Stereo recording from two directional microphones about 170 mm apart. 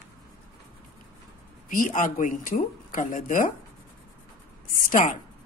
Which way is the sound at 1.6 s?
55° left (ahead or behind).